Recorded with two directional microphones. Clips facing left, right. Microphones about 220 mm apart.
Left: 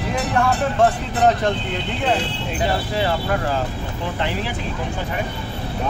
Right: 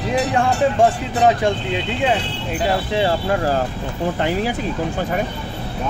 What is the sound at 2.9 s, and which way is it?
Speech, 25° right (ahead or behind).